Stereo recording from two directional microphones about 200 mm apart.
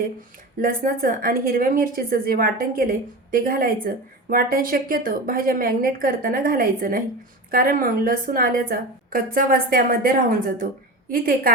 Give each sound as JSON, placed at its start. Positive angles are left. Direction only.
{"t": 0.6, "sound": "a woman's voice", "side_deg": -45}